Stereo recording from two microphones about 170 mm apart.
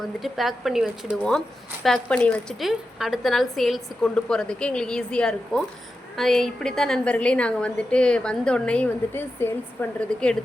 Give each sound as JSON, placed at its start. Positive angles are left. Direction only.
{"t": 0.2, "sound": "a woman's voice", "side_deg": 0}